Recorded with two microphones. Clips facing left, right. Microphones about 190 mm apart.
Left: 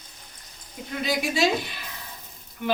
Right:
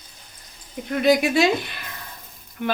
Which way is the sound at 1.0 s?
60° right (ahead or behind).